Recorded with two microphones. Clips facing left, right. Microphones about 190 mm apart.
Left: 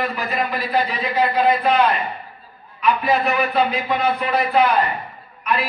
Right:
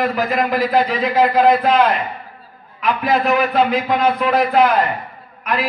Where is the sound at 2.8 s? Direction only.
90° right.